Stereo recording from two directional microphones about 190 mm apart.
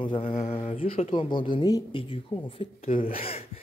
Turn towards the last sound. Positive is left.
turn(degrees=30)  # may be behind; listen again after turning